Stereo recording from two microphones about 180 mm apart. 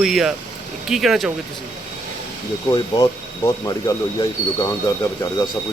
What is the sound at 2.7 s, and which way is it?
Speech, 20° left (ahead or behind).